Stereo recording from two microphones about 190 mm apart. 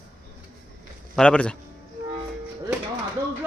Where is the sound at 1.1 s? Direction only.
5° left (ahead or behind).